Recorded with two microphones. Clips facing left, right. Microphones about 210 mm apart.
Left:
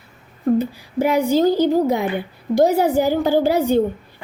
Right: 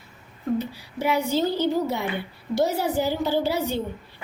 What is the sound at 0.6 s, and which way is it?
A woman's voice, 50° left (ahead or behind).